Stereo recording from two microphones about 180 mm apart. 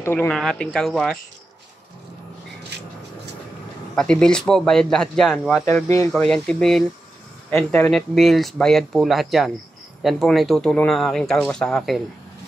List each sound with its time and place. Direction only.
0.0 s speech: 10° left (ahead or behind)
2.7 s a sound: 65° right (ahead or behind)
3.9 s speech: 5° left (ahead or behind)
5.7 s speech: 15° left (ahead or behind)
6.2 s speech: 5° left (ahead or behind)